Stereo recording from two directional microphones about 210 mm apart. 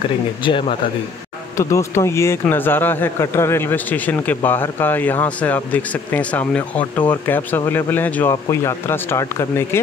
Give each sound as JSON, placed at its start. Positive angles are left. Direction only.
{"t": 0.4, "sound": "speech", "side_deg": 25}
{"t": 1.6, "sound": "speech", "side_deg": 15}